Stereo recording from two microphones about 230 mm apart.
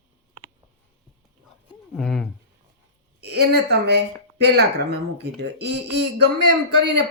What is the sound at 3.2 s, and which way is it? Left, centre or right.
Speech, right.